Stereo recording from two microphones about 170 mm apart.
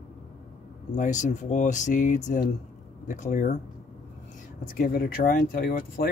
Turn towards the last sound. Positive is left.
turn(degrees=60)  # may be behind; listen again after turning